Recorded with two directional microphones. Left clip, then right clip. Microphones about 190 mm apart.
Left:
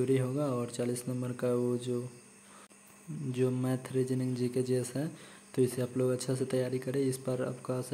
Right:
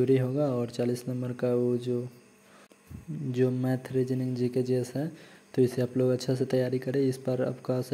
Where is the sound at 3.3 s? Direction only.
15° right (ahead or behind).